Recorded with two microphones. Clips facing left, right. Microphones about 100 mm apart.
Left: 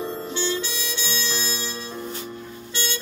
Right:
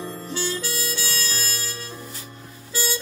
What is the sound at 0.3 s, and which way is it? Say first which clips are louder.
Harmonica: right 1 dB; 5° right (ahead or behind).